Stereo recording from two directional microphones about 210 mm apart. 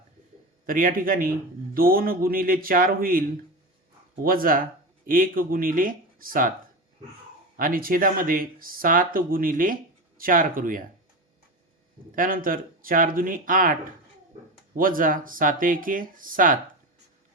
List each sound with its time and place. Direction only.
0.6 s speech: 40° right (ahead or behind)
7.5 s speech: 45° right (ahead or behind)
12.1 s speech: 40° right (ahead or behind)
14.8 s speech: 40° right (ahead or behind)